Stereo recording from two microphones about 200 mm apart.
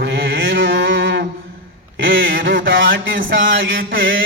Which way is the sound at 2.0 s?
70° right (ahead or behind).